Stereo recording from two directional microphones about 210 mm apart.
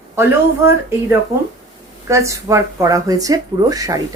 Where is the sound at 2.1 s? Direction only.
15° right (ahead or behind).